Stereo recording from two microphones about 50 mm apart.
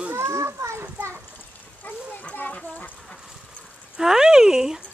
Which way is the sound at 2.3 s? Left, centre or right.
Left.